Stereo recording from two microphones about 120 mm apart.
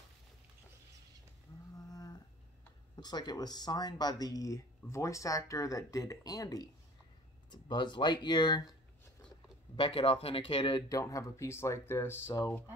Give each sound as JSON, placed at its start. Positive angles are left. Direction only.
{"t": 1.9, "sound": "a sound", "side_deg": 30}
{"t": 3.0, "sound": "speech", "side_deg": 35}
{"t": 9.8, "sound": "speech", "side_deg": 50}
{"t": 10.9, "sound": "speech", "side_deg": 30}